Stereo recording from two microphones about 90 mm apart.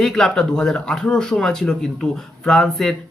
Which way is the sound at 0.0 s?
5° left (ahead or behind).